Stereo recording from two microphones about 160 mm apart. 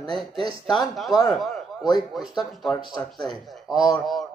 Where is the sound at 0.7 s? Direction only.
Centre (ahead or behind).